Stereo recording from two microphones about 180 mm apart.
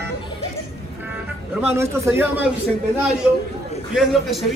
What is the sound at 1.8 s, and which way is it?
Speech, 10° right (ahead or behind).